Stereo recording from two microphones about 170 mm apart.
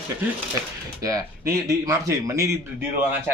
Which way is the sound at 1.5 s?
20° right (ahead or behind).